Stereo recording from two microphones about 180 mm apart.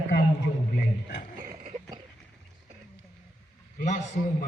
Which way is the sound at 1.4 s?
50° right (ahead or behind).